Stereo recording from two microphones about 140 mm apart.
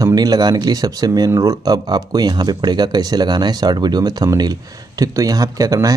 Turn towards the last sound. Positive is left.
turn(degrees=-25)  # may be behind; listen again after turning